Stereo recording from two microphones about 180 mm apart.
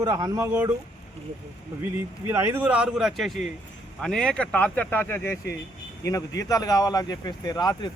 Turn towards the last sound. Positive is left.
turn(degrees=20)  # may be behind; listen again after turning